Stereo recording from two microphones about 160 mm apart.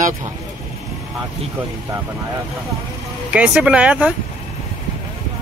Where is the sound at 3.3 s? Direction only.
10° right (ahead or behind).